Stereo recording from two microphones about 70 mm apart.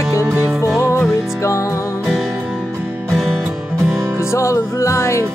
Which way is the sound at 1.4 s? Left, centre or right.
Left.